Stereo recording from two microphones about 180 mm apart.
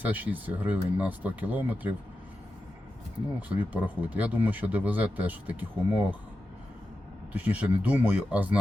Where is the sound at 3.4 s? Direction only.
10° right (ahead or behind).